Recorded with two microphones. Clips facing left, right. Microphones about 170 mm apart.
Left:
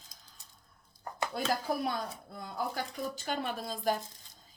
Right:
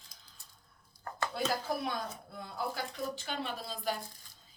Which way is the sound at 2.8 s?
45° left (ahead or behind).